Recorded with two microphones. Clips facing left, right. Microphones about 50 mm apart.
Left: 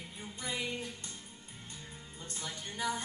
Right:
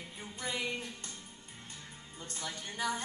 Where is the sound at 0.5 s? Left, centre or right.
Left.